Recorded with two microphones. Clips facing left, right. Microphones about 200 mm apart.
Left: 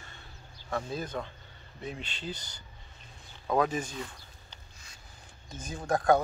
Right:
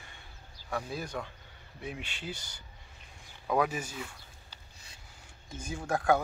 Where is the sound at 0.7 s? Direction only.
10° right (ahead or behind).